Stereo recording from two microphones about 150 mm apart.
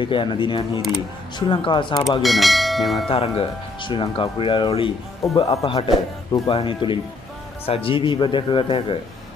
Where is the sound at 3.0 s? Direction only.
40° left (ahead or behind).